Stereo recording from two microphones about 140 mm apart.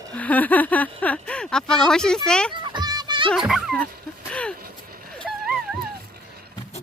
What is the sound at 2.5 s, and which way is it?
Music, 35° right (ahead or behind).